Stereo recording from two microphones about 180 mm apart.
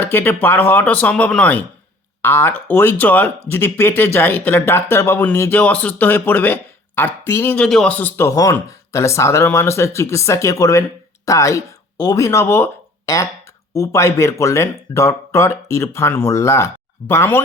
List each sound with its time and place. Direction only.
0.0 s speech: 10° left (ahead or behind)